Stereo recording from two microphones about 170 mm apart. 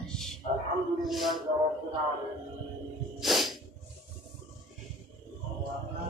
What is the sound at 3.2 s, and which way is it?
Music, centre (ahead or behind).